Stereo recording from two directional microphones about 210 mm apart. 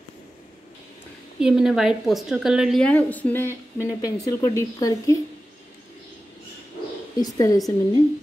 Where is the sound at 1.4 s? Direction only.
5° right (ahead or behind); by 5.1 s 15° left (ahead or behind).